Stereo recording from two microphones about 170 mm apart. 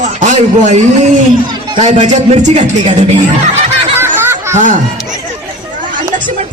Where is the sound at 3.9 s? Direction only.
15° right (ahead or behind).